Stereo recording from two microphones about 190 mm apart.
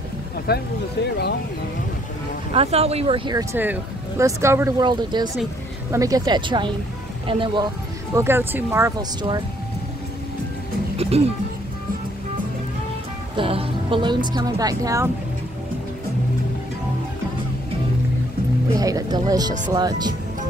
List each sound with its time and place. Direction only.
0.5 s speech: 55° left (ahead or behind)
2.5 s speech: 30° right (ahead or behind)
3.5 s speech: 10° right (ahead or behind); by 7.6 s 25° right (ahead or behind)
8.1 s speech: 15° right (ahead or behind)
11.0 s music: 30° right (ahead or behind)
13.4 s speech: 30° right (ahead or behind)
18.8 s speech: 20° right (ahead or behind)